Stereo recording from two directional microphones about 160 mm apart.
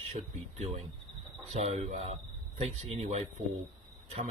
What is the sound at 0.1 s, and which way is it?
Speech, 40° right (ahead or behind).